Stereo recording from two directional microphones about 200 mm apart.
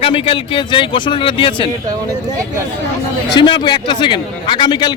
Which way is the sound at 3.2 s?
20° left (ahead or behind).